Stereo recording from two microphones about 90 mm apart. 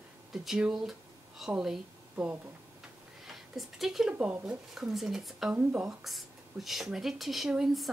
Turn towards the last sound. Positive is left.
turn(degrees=-5)  # may be behind; listen again after turning